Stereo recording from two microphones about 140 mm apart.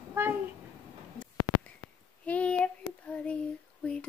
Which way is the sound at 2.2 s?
10° left (ahead or behind).